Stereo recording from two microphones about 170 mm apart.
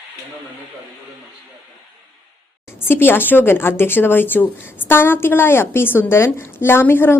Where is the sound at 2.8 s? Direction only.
15° left (ahead or behind).